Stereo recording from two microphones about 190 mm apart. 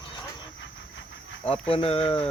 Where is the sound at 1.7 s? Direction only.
30° left (ahead or behind).